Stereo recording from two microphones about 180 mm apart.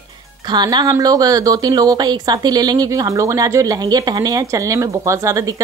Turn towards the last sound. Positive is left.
turn(degrees=-20)  # may be behind; listen again after turning